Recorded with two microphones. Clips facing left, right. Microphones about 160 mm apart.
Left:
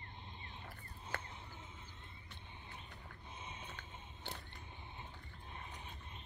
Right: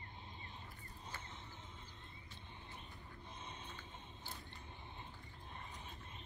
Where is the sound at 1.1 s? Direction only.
65° left (ahead or behind).